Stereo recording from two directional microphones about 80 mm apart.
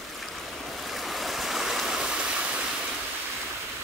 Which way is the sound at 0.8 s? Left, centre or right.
Centre.